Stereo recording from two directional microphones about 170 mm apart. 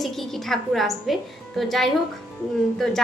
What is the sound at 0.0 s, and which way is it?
A woman's voice, centre (ahead or behind).